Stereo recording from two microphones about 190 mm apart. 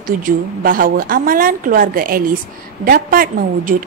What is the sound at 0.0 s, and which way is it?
A woman's voice, 45° right (ahead or behind).